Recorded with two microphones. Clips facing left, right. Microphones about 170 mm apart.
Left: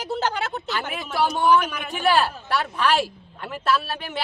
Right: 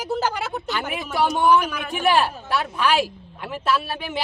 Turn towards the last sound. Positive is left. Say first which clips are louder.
# even
turn(degrees=-10)  # may be behind; listen again after turning